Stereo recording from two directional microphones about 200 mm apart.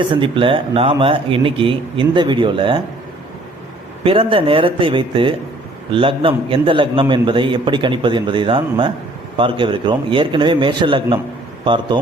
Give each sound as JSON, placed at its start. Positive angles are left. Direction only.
{"t": 0.1, "sound": "a man's voice", "side_deg": -25}
{"t": 4.0, "sound": "a man's voice", "side_deg": -25}